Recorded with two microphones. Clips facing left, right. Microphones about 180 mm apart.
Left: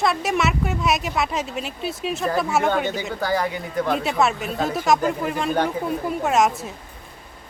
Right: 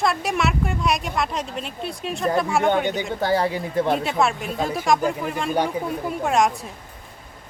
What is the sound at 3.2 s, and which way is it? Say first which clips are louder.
Speech: right 2 dB; 30° right (ahead or behind).